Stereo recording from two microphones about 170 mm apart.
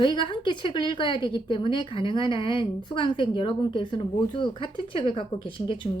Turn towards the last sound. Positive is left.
turn(degrees=30)  # may be behind; listen again after turning